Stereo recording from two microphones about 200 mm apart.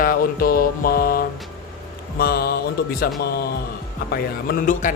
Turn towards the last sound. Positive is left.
turn(degrees=40)  # may be behind; listen again after turning